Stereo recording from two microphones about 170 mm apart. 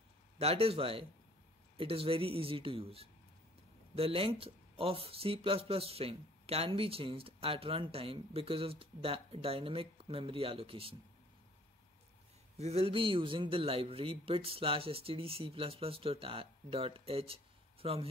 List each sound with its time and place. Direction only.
0.4 s speech: 35° right (ahead or behind)
12.5 s speech: 40° right (ahead or behind)